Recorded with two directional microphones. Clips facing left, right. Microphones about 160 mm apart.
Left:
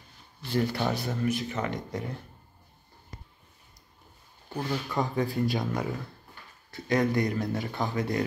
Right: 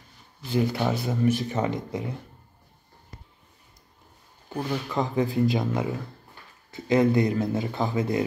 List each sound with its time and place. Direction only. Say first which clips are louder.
0.6 s speech: right 3 dB; 5° right (ahead or behind)
1.2 s speech: right 6 dB; 25° right (ahead or behind)
4.6 s speech: right 2 dB; centre (ahead or behind)
5.0 s speech: right 6 dB; 20° right (ahead or behind)